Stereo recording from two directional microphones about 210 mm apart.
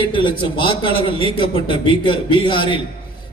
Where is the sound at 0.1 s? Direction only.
25° left (ahead or behind).